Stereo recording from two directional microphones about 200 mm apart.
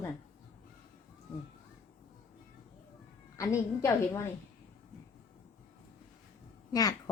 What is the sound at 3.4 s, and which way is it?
Speech, 15° left (ahead or behind).